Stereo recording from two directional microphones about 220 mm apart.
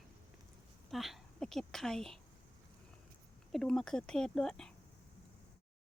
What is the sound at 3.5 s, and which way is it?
A woman's voice, centre (ahead or behind).